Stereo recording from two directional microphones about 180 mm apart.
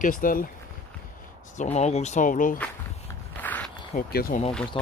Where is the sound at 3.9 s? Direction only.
55° left (ahead or behind).